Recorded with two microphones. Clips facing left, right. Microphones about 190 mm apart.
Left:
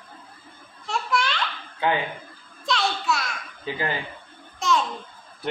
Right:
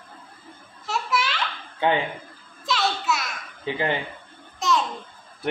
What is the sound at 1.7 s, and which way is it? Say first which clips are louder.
Speech: right 2 dB; 25° right (ahead or behind).